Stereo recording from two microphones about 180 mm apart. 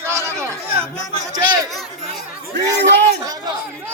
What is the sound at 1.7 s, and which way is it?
Speech, centre (ahead or behind).